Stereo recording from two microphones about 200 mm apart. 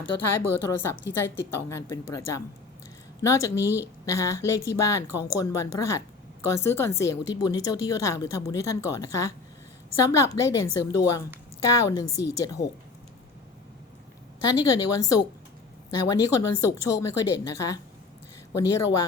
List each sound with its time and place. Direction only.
0.0 s speech: 10° left (ahead or behind)
14.4 s speech: 20° left (ahead or behind)